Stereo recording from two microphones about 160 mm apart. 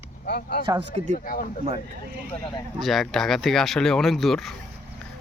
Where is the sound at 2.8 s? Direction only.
Centre (ahead or behind).